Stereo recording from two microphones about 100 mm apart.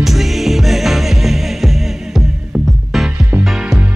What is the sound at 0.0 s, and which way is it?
Music, centre (ahead or behind).